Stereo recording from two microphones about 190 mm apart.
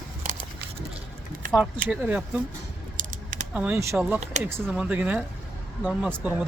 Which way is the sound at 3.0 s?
45° right (ahead or behind).